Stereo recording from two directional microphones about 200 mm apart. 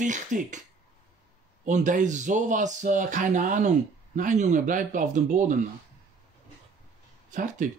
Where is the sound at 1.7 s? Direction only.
40° right (ahead or behind).